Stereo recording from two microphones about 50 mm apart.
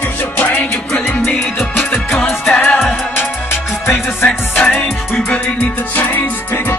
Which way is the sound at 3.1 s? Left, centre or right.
Left.